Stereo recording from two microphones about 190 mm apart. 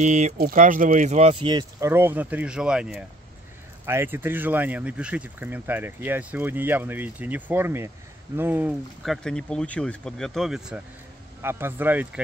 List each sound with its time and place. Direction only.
0.0 s speech: 40° right (ahead or behind); by 8.7 s 10° right (ahead or behind)
9.0 s speech: centre (ahead or behind)